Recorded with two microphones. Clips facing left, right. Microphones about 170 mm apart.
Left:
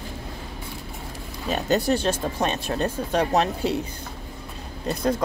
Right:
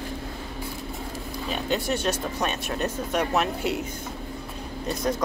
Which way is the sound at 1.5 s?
40° left (ahead or behind).